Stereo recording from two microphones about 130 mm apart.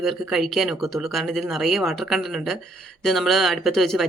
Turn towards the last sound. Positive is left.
turn(degrees=0)  # may be behind; listen again after turning